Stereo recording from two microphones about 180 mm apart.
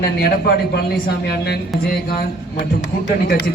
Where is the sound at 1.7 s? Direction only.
Centre (ahead or behind).